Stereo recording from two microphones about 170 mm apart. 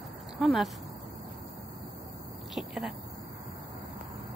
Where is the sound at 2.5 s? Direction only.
Centre (ahead or behind).